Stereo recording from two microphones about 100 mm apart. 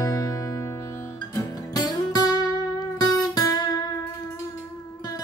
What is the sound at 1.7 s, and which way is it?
Music, 40° left (ahead or behind).